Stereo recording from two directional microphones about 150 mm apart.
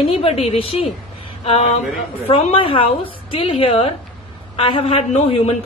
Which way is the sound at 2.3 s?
40° left (ahead or behind).